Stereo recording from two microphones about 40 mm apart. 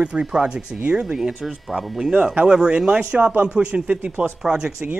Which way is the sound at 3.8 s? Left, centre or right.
Right.